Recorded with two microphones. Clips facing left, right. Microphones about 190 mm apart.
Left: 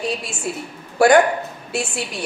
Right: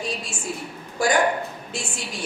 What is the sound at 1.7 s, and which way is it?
Speech, 65° left (ahead or behind).